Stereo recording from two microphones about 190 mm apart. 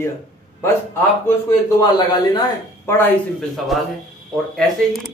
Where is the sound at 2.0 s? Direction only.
25° left (ahead or behind).